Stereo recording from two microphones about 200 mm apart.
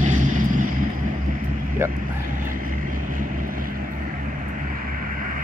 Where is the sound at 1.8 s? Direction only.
15° right (ahead or behind).